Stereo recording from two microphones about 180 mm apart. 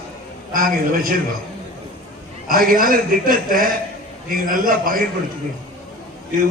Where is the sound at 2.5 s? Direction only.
50° right (ahead or behind).